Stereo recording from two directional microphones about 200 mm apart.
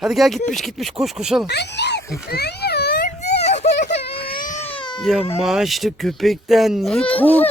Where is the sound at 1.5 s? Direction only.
55° left (ahead or behind).